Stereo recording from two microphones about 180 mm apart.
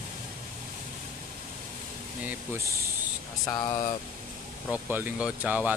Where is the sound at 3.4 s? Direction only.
25° left (ahead or behind).